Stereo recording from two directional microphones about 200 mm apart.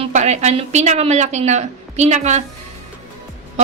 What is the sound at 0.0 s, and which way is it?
A woman's voice, 35° right (ahead or behind).